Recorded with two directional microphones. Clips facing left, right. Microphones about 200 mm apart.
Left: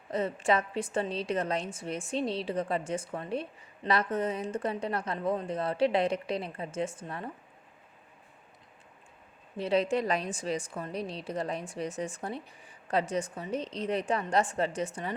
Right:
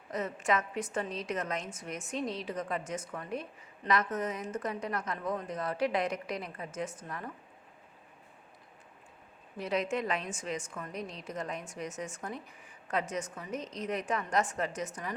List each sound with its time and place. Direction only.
0.1 s a woman's voice: 30° left (ahead or behind)
9.6 s a woman's voice: 30° left (ahead or behind)